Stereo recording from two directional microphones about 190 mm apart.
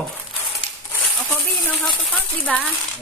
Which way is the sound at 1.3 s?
10° left (ahead or behind).